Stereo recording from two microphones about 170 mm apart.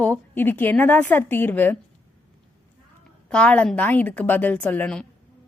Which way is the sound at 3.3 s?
5° left (ahead or behind).